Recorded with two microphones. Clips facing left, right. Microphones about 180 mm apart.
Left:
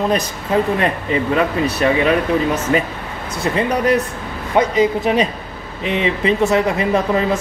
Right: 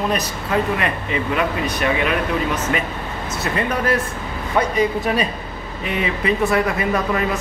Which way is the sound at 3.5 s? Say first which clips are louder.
Left 4 dB; 20° left (ahead or behind).